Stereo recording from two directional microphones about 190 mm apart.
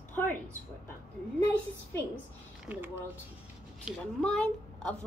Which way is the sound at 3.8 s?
5° left (ahead or behind).